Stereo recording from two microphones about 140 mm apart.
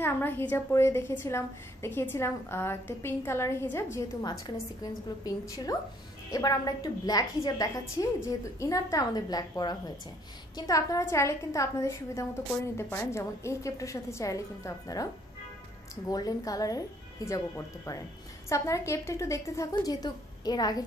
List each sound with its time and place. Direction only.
0.0 s a woman's voice: 15° left (ahead or behind)
16.1 s a woman's voice: 25° left (ahead or behind)